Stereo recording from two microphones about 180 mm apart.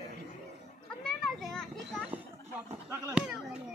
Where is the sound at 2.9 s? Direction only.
5° right (ahead or behind).